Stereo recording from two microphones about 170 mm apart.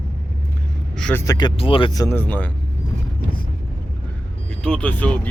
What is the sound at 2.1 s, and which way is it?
Speech, 10° left (ahead or behind).